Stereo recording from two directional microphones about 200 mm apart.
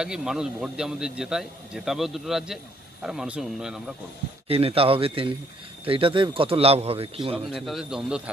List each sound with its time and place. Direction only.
0.0 s a man's voice: 5° right (ahead or behind)
4.5 s speech: 30° right (ahead or behind)
7.4 s a man's voice: centre (ahead or behind)